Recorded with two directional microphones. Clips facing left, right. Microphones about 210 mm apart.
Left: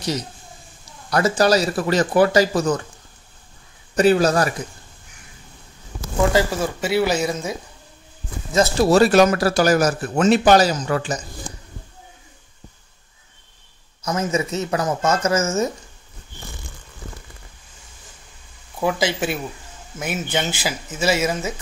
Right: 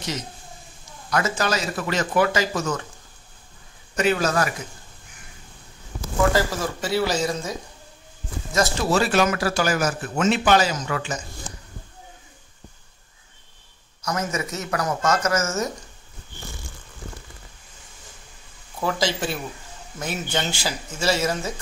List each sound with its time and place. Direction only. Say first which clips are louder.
1.1 s speech: left 7 dB; 35° left (ahead or behind)
3.9 s speech: left 6 dB; 35° left (ahead or behind)
6.3 s speech: left 4 dB; 20° left (ahead or behind)
8.7 s speech: left 9 dB; 40° left (ahead or behind)
14.0 s speech: left 5 dB; 25° left (ahead or behind)
18.8 s speech: left 3 dB; 10° left (ahead or behind)